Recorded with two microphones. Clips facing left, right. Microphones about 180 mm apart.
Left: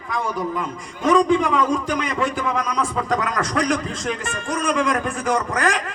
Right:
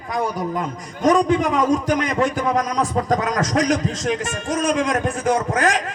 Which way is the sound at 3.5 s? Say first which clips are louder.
Right 2 dB; 55° left (ahead or behind).